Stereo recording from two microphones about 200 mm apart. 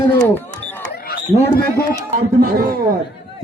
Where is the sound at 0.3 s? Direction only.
10° left (ahead or behind).